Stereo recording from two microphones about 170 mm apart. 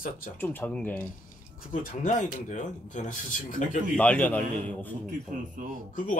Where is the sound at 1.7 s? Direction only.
45° left (ahead or behind).